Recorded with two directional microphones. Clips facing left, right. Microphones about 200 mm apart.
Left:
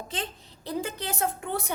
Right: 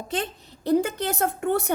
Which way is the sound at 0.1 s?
65° right (ahead or behind).